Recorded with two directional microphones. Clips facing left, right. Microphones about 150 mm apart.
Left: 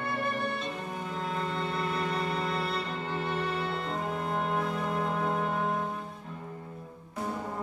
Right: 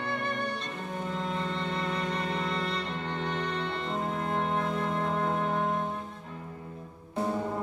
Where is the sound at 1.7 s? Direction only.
5° left (ahead or behind).